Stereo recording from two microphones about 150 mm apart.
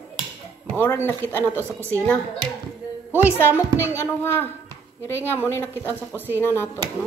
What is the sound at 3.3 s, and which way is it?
A woman's voice, 15° left (ahead or behind).